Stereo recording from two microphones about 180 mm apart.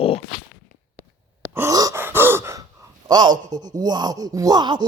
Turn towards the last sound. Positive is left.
turn(degrees=-25)  # may be behind; listen again after turning